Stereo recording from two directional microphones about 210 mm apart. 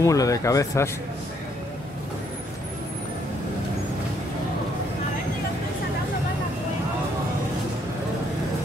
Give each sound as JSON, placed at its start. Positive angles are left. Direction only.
{"t": 0.0, "sound": "speech", "side_deg": 15}